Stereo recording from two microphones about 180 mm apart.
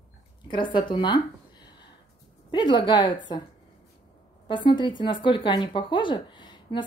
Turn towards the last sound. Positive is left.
turn(degrees=25)  # may be behind; listen again after turning